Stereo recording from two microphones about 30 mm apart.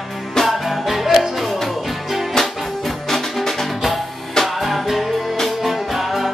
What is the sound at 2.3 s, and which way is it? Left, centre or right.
Music, centre.